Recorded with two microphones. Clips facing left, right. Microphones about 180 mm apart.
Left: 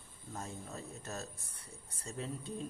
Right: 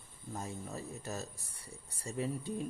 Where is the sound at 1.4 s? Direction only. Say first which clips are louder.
Right 2 dB; 60° left (ahead or behind).